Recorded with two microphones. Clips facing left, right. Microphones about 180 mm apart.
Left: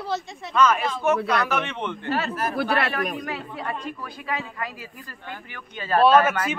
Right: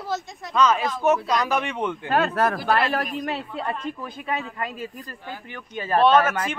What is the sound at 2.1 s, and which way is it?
Speech, 60° right (ahead or behind).